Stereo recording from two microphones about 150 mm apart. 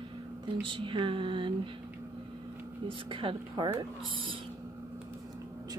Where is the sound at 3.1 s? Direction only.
35° right (ahead or behind).